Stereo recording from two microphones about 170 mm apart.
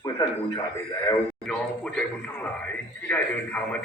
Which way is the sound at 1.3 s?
5° left (ahead or behind).